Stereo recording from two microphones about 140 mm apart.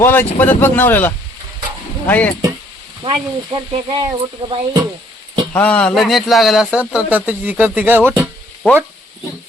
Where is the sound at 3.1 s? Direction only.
35° right (ahead or behind).